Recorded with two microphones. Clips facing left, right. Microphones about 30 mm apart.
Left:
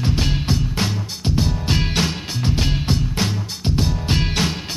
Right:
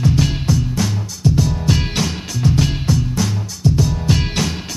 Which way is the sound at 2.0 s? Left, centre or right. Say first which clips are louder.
Right 1 dB; left.